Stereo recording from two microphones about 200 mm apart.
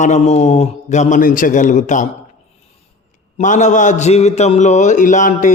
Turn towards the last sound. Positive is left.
turn(degrees=40)  # may be behind; listen again after turning